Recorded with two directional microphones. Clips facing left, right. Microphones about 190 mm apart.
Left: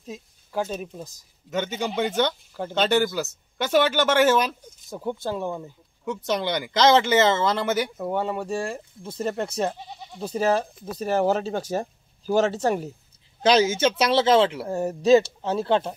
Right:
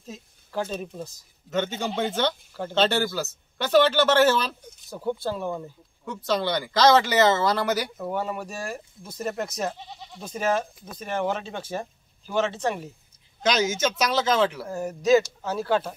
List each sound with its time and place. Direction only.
0.0 s speech: 15° left (ahead or behind)